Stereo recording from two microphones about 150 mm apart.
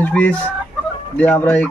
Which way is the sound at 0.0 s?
10° left (ahead or behind).